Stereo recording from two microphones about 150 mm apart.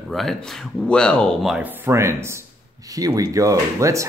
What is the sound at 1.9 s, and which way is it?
Speech, 20° right (ahead or behind).